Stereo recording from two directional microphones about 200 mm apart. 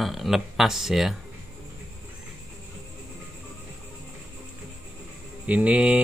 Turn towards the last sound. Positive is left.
turn(degrees=-5)  # may be behind; listen again after turning